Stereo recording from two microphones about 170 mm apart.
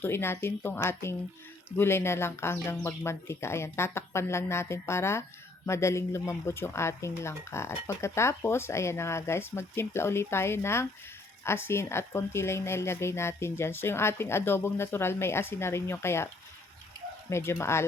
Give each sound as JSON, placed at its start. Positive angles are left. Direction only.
{"t": 0.0, "sound": "speech", "side_deg": 15}